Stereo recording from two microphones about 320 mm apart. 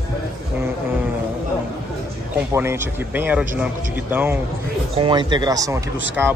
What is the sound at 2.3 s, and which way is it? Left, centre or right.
Speech, centre.